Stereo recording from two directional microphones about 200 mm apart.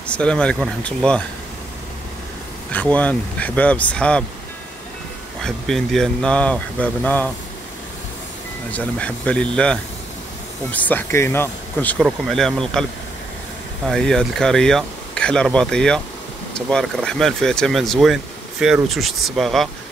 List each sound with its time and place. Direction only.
0.0 s speech: 5° left (ahead or behind)
2.7 s speech: 5° left (ahead or behind)
5.4 s speech: centre (ahead or behind)
8.7 s speech: 5° left (ahead or behind)
13.8 s speech: 5° left (ahead or behind)